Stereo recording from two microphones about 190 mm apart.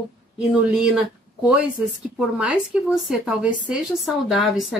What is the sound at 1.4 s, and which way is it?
Speech, 5° right (ahead or behind).